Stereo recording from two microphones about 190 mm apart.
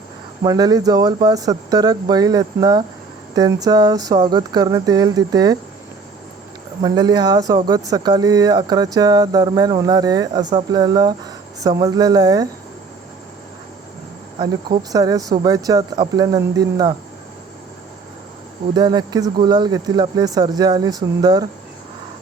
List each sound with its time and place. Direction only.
0.4 s speech: 20° right (ahead or behind)
6.8 s speech: 20° right (ahead or behind)
14.9 s speech: 20° right (ahead or behind)
18.7 s speech: 20° right (ahead or behind)